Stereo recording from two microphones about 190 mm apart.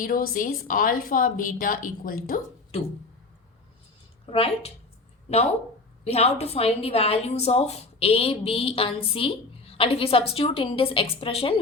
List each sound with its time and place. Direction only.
0.0 s a woman's voice: 50° left (ahead or behind)
4.3 s speech: 30° left (ahead or behind)
6.1 s a woman's voice: 30° left (ahead or behind)